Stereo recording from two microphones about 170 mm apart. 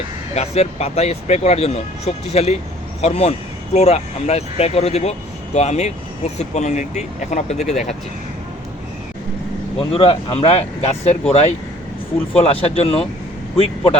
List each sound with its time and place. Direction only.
0.3 s speech: 40° left (ahead or behind)
9.7 s speech: 35° left (ahead or behind)